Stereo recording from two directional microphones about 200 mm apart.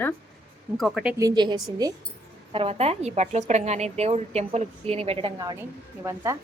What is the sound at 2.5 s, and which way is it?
A woman's voice, 30° right (ahead or behind).